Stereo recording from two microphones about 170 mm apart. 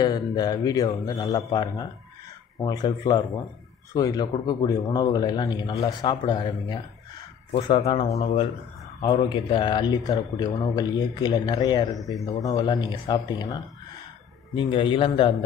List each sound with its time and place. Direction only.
0.0 s a man's voice: 25° left (ahead or behind); by 8.5 s 40° left (ahead or behind)
9.0 s a man's voice: 25° left (ahead or behind)
12.0 s speech: centre (ahead or behind)
12.3 s a man's voice: 20° left (ahead or behind)